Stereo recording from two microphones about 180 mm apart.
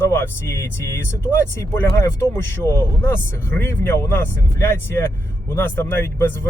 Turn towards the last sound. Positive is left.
turn(degrees=10)  # may be behind; listen again after turning